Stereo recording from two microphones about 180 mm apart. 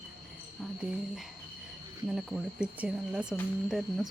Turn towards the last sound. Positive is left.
turn(degrees=0)  # may be behind; listen again after turning